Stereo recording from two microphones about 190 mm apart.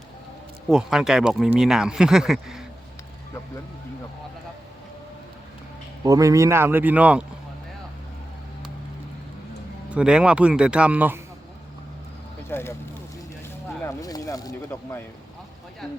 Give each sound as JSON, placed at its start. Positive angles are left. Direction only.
{"t": 0.7, "sound": "speech", "side_deg": -5}
{"t": 6.1, "sound": "speech", "side_deg": -15}
{"t": 9.9, "sound": "speech", "side_deg": -5}
{"t": 12.5, "sound": "speech", "side_deg": 10}
{"t": 13.8, "sound": "speech", "side_deg": 20}